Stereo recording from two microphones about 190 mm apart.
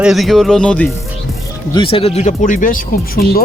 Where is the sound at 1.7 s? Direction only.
30° left (ahead or behind); by 3.4 s 50° left (ahead or behind).